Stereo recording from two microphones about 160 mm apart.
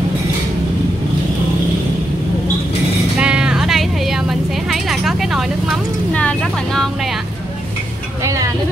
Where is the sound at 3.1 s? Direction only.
5° right (ahead or behind).